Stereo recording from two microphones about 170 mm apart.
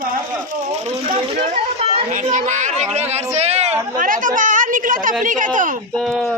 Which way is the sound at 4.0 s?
55° right (ahead or behind).